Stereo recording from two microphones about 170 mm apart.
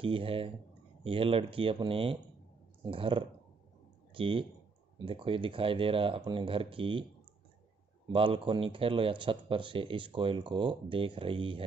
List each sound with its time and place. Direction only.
0.0 s speech: 30° right (ahead or behind)
8.1 s speech: 30° right (ahead or behind)